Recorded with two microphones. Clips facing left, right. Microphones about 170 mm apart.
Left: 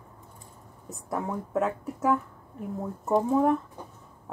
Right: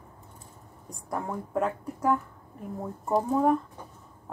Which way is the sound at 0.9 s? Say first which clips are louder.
Left 2 dB; 5° left (ahead or behind).